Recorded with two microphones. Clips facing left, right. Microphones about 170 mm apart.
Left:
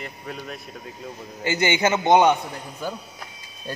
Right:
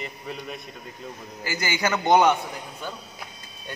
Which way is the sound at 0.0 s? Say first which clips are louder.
Even; centre (ahead or behind).